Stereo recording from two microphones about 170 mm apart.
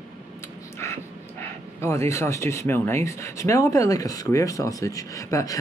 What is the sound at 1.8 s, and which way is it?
Speech, 15° left (ahead or behind).